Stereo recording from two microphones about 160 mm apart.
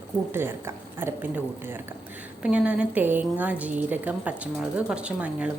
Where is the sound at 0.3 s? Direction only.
15° right (ahead or behind).